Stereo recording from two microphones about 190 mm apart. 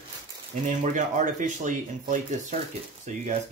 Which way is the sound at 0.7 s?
40° right (ahead or behind).